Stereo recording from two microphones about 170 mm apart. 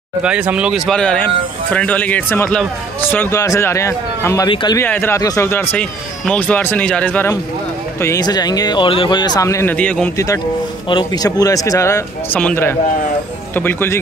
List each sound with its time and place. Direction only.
0.2 s speech: 5° right (ahead or behind); by 4.5 s 15° left (ahead or behind)
4.5 s speech: 30° left (ahead or behind)
4.7 s speech: 10° left (ahead or behind)
8.0 s speech: 20° left (ahead or behind)
10.1 s speech: 20° left (ahead or behind)